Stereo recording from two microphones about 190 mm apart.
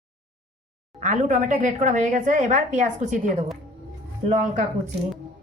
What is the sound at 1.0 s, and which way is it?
Speech, 40° right (ahead or behind).